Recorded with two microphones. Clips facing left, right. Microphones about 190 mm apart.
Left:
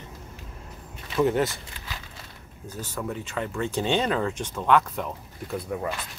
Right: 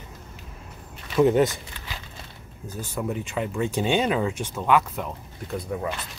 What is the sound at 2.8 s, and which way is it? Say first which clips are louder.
Speech: right 3 dB; 15° right (ahead or behind).